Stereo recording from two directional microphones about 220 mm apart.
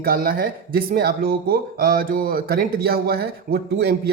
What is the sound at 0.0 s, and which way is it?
Speech, 45° right (ahead or behind).